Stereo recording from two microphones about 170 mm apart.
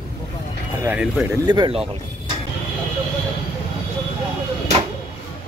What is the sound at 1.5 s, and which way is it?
Speech, 25° right (ahead or behind).